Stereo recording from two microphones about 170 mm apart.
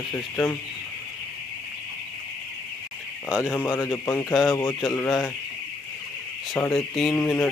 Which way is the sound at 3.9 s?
15° left (ahead or behind).